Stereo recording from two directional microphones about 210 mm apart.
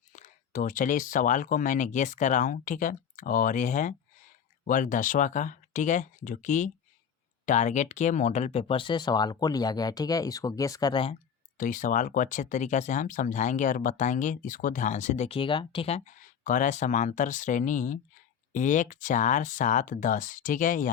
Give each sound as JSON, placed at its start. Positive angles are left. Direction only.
{"t": 0.1, "sound": "speech", "side_deg": 40}
{"t": 11.5, "sound": "speech", "side_deg": 40}